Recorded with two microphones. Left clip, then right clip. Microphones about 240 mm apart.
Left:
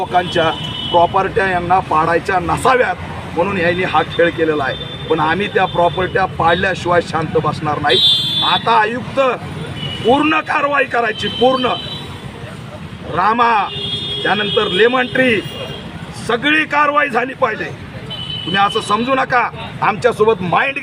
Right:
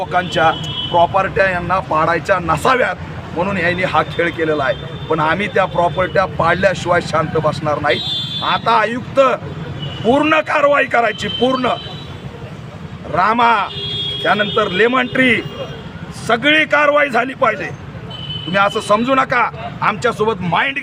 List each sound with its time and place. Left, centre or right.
0.1 s a man's voice: centre
13.1 s a man's voice: centre
18.5 s a man's voice: centre